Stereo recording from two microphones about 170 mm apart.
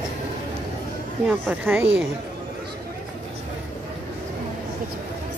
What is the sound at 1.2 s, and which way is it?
Speech, 10° right (ahead or behind).